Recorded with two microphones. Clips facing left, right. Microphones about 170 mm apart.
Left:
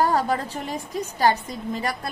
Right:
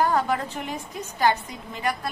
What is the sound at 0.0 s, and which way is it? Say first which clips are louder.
Speech: left 1 dB; 35° left (ahead or behind).